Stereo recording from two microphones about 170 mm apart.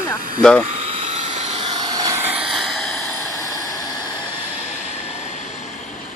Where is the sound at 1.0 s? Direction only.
40° right (ahead or behind); by 3.1 s centre (ahead or behind).